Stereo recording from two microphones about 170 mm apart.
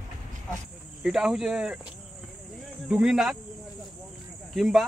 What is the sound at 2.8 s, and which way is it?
Cricket, 5° right (ahead or behind).